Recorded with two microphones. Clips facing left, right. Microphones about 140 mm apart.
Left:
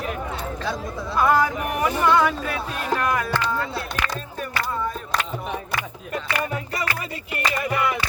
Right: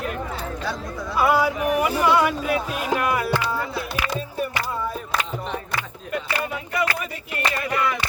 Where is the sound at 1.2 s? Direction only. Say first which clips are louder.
Even; 10° right (ahead or behind).